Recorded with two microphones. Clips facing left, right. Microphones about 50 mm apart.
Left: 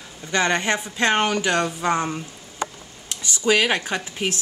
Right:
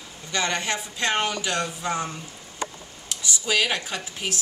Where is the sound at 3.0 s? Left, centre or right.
Left.